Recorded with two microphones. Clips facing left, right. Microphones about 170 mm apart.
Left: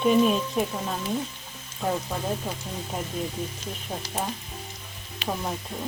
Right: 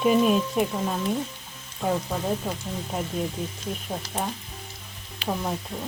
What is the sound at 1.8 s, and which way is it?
Frying, 5° right (ahead or behind).